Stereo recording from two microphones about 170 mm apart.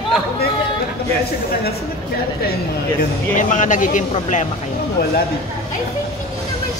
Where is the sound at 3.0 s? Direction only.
50° left (ahead or behind).